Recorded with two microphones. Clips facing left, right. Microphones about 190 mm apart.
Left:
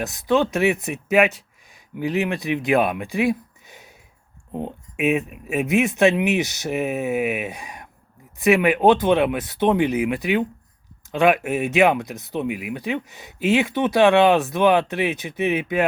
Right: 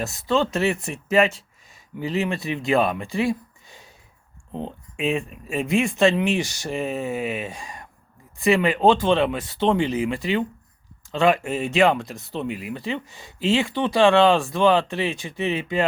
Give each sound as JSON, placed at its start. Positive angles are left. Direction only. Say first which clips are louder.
{"t": 0.0, "sound": "speech", "louder": "left 2 dB", "side_deg": 15}
{"t": 3.1, "sound": "a sound", "louder": "left 2 dB", "side_deg": 15}
{"t": 4.5, "sound": "speech", "louder": "left 2 dB", "side_deg": 15}